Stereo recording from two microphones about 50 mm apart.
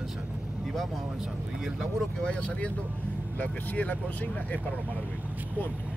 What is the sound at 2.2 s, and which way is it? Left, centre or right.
Speech, left.